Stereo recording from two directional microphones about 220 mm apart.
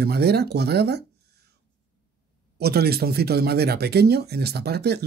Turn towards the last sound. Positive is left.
turn(degrees=-50)  # may be behind; listen again after turning